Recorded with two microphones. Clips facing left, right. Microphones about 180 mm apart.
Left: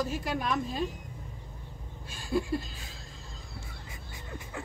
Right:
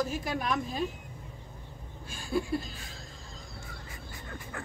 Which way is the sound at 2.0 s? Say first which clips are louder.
Left 1 dB; centre (ahead or behind).